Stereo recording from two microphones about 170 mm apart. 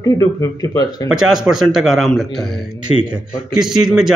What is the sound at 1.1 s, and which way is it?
A man's voice, 5° right (ahead or behind).